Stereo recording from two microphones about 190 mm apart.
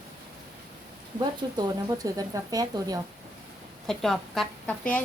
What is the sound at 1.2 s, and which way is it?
Speech, 20° right (ahead or behind).